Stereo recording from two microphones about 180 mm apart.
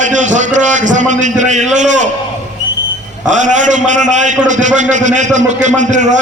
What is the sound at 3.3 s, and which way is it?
A man's voice, 45° right (ahead or behind).